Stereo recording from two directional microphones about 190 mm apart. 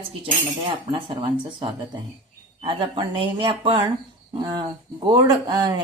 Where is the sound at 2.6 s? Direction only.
25° right (ahead or behind).